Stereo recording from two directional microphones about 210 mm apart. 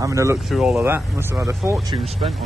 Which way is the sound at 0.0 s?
15° right (ahead or behind).